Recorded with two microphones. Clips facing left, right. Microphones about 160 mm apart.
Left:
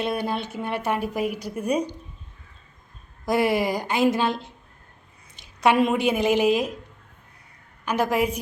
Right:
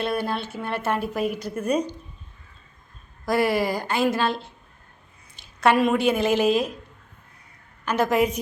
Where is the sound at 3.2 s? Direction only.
20° left (ahead or behind).